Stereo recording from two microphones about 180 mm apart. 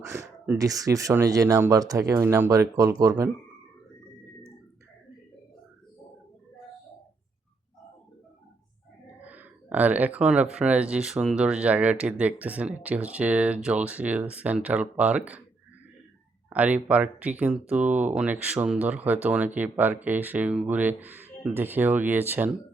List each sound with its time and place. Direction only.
0.0 s speech: 15° right (ahead or behind)
9.2 s speech: 10° right (ahead or behind)
16.5 s speech: 10° right (ahead or behind)